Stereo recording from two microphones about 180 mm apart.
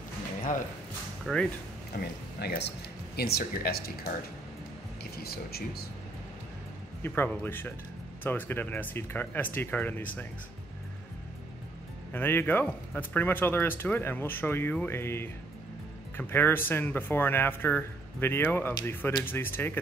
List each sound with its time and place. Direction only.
1.2 s speech: 5° left (ahead or behind)
1.9 s speech: 65° left (ahead or behind)
5.1 s speech: 60° left (ahead or behind)
7.0 s speech: 10° left (ahead or behind)
12.1 s speech: 10° left (ahead or behind)